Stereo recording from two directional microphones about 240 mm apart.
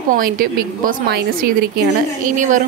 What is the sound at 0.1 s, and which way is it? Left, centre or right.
A woman's voice, right.